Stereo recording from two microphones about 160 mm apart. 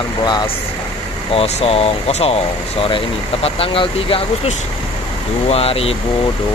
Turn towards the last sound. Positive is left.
turn(degrees=35)  # may be behind; listen again after turning